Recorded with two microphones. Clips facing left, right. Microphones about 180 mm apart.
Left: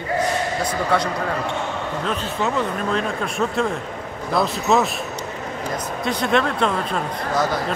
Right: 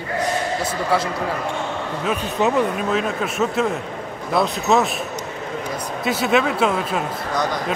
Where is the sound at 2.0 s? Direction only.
10° right (ahead or behind).